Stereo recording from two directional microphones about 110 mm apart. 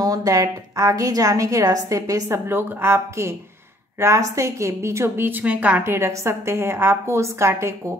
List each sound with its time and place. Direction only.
0.0 s a woman's voice: 35° right (ahead or behind)